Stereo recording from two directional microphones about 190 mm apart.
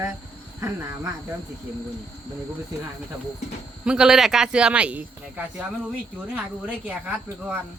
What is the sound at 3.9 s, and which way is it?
Speech, 5° right (ahead or behind).